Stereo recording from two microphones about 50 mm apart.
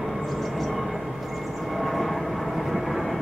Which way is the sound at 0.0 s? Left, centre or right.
Centre.